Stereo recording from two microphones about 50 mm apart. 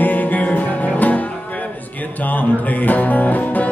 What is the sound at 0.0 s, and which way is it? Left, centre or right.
Music, left.